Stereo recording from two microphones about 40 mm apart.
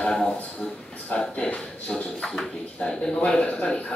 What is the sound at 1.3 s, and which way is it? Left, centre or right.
Speech, left.